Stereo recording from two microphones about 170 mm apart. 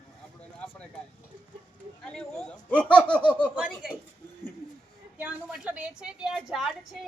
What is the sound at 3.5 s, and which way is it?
Speech, 5° right (ahead or behind).